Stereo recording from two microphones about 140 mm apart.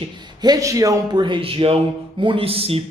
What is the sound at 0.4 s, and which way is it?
Speech, 25° right (ahead or behind).